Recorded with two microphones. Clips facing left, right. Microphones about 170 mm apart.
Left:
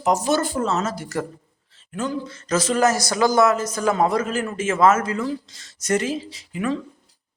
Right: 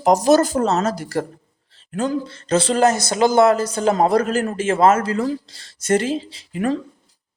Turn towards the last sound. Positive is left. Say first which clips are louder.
# right 3 dB
turn(degrees=-40)  # may be behind; listen again after turning